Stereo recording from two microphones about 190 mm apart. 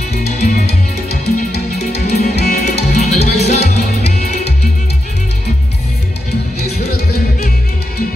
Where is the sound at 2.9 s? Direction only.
35° left (ahead or behind).